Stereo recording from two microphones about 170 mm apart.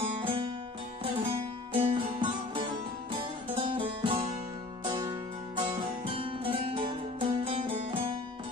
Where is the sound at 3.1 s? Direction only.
30° right (ahead or behind).